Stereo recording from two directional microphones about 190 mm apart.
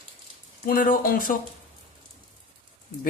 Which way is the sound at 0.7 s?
45° left (ahead or behind).